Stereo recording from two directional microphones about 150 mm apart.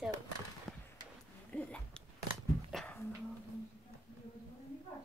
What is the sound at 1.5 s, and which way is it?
Speech, 10° left (ahead or behind).